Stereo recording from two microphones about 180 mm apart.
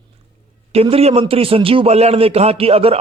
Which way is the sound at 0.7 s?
35° right (ahead or behind).